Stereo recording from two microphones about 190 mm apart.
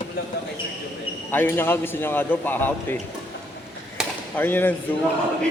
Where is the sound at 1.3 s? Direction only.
10° left (ahead or behind).